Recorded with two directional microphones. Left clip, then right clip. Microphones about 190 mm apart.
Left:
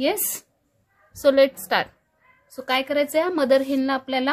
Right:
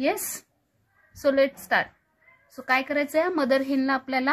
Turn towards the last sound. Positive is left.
turn(degrees=0)  # may be behind; listen again after turning